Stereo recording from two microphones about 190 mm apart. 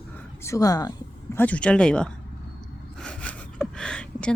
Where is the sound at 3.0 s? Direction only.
5° left (ahead or behind).